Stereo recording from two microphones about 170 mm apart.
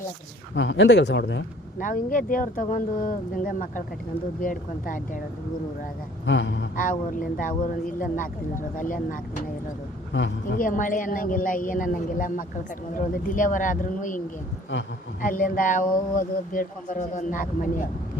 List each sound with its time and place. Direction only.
0.5 s speech: 90° left
1.8 s speech: 50° left (ahead or behind)
6.2 s speech: 90° left
7.2 s speech: 50° left (ahead or behind)
10.1 s speech: 90° left
10.6 s speech: 50° left (ahead or behind)
15.2 s speech: 55° left (ahead or behind)